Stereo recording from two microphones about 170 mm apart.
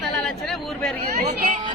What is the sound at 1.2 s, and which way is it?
Speech, 45° right (ahead or behind).